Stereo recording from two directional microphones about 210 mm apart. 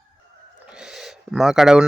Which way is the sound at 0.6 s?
5° right (ahead or behind).